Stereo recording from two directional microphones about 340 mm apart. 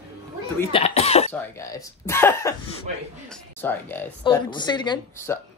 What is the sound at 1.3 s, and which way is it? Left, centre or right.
Speech, centre.